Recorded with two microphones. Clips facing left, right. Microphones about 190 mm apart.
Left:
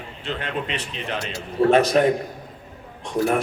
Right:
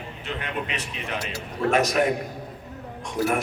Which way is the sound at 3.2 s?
20° left (ahead or behind).